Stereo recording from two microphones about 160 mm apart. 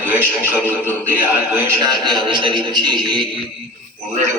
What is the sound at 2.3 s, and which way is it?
Speech, 30° right (ahead or behind).